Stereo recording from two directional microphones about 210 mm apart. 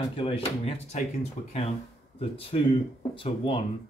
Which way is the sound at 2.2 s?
25° left (ahead or behind).